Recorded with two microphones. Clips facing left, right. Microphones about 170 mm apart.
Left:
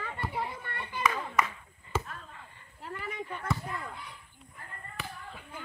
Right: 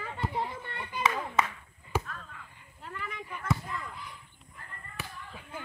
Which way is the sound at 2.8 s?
35° left (ahead or behind).